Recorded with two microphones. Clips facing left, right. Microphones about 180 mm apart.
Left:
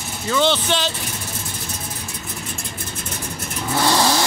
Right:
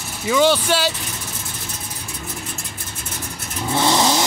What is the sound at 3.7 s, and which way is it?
Vehicle, 20° right (ahead or behind).